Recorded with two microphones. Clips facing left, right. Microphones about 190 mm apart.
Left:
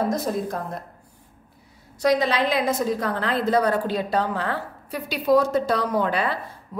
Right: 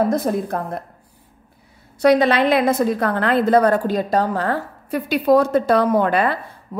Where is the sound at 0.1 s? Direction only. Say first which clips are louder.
Right 5 dB; 55° right (ahead or behind).